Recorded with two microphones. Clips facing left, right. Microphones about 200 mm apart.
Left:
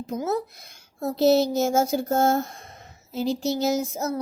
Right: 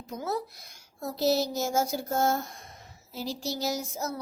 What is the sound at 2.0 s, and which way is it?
Speech, 50° left (ahead or behind).